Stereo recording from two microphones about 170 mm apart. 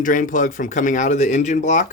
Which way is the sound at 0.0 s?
50° left (ahead or behind).